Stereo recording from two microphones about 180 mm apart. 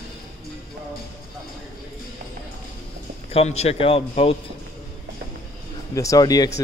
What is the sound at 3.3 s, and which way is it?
A man's voice, 35° left (ahead or behind).